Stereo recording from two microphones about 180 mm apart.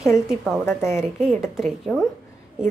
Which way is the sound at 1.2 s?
Centre (ahead or behind).